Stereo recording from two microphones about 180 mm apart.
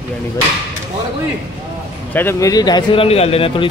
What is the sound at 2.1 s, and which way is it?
Speech, 15° left (ahead or behind).